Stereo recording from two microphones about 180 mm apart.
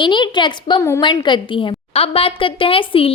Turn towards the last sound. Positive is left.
turn(degrees=30)  # may be behind; listen again after turning